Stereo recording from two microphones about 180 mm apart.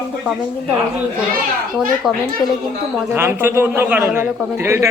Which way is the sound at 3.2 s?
15° right (ahead or behind).